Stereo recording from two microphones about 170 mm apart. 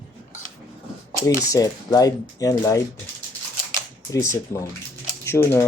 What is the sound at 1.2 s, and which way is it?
Speech, 20° left (ahead or behind).